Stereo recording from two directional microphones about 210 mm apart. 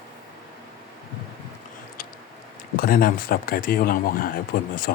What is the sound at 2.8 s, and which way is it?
Speech, 45° left (ahead or behind).